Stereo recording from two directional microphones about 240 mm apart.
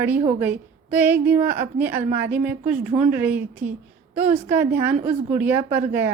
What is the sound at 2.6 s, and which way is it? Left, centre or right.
Speech, right.